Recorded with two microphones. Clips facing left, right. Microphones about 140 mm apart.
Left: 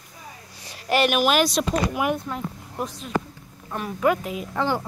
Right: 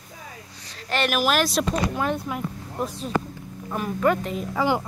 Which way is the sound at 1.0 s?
Centre (ahead or behind).